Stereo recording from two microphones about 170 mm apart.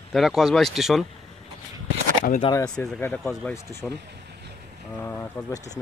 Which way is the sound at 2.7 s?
5° left (ahead or behind).